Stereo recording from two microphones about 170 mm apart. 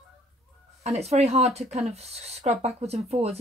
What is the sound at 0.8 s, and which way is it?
Speech, 40° right (ahead or behind).